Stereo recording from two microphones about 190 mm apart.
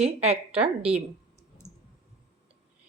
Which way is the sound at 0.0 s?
35° right (ahead or behind).